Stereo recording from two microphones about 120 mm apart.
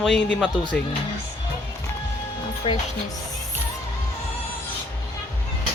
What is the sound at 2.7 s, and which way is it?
Speech, 55° left (ahead or behind).